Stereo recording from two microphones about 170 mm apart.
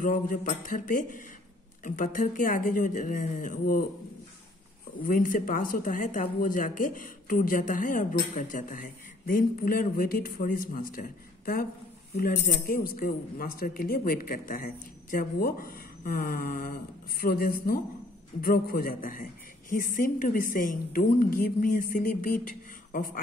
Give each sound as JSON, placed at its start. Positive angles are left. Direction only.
{"t": 0.0, "sound": "speech", "side_deg": 55}
{"t": 5.0, "sound": "speech", "side_deg": 55}